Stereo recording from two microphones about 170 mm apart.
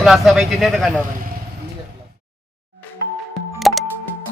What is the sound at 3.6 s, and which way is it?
Music, centre (ahead or behind).